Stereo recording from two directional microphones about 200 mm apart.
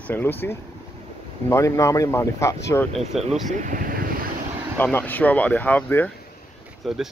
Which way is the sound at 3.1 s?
Centre (ahead or behind).